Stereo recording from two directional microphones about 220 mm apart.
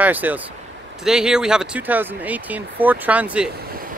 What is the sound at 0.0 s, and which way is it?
Speech, 10° right (ahead or behind).